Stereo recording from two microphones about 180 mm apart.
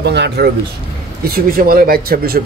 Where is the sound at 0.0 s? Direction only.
70° right (ahead or behind).